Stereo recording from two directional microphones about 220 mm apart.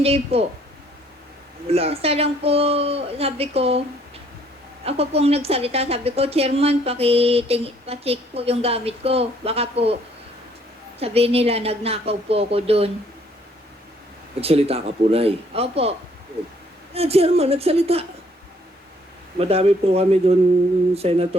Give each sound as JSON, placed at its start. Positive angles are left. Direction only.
{"t": 0.0, "sound": "a woman's voice", "side_deg": -25}
{"t": 1.6, "sound": "a woman's voice", "side_deg": -25}
{"t": 4.9, "sound": "a woman's voice", "side_deg": -25}
{"t": 11.0, "sound": "a woman's voice", "side_deg": -25}
{"t": 14.4, "sound": "a woman's voice", "side_deg": -25}
{"t": 19.4, "sound": "a woman's voice", "side_deg": -25}